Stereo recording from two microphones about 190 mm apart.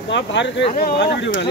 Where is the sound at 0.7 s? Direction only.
55° left (ahead or behind).